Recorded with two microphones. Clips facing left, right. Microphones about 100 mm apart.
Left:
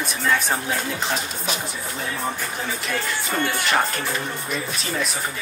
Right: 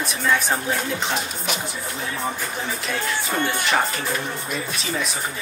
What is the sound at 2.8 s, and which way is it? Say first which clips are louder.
Speech: right 2 dB; centre (ahead or behind).